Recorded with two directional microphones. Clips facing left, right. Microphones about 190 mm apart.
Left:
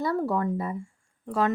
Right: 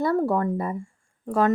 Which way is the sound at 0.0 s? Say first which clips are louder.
Right 4 dB; 50° right (ahead or behind).